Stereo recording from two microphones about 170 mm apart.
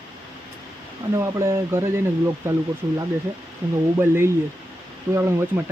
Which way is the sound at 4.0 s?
15° right (ahead or behind).